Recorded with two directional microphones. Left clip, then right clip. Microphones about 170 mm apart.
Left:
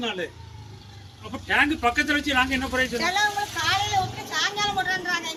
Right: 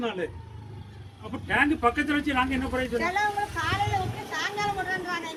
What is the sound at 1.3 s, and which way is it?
Speech, 20° right (ahead or behind).